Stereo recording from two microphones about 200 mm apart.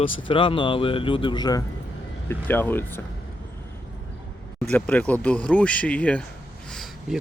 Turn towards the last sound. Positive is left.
turn(degrees=0)  # may be behind; listen again after turning